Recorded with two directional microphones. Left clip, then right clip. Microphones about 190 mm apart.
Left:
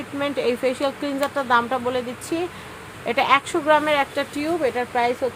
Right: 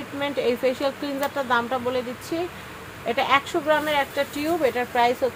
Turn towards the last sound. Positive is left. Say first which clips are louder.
# even
turn(degrees=15)  # may be behind; listen again after turning